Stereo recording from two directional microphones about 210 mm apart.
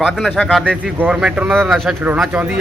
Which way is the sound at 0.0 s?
Centre (ahead or behind).